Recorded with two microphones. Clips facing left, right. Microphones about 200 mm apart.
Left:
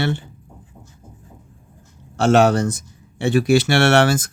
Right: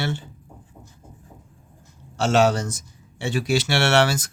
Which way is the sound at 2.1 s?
55° left (ahead or behind).